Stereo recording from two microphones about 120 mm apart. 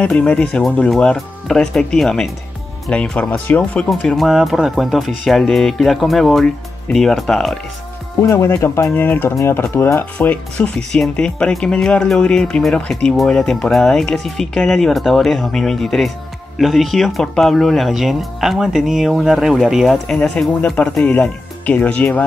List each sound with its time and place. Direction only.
0.0 s speech: 10° left (ahead or behind)
4.0 s speech: centre (ahead or behind)
8.2 s speech: 25° left (ahead or behind)
10.1 s speech: 10° left (ahead or behind)